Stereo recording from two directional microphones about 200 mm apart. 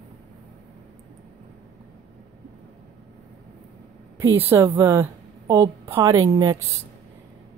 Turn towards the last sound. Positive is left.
turn(degrees=-20)  # may be behind; listen again after turning